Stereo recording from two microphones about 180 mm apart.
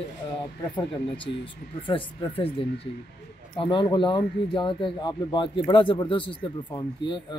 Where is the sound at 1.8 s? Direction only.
30° left (ahead or behind).